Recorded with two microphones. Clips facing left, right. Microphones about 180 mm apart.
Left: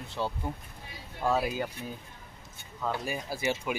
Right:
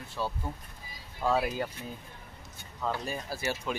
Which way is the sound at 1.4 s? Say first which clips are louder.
Left 1 dB; 10° left (ahead or behind).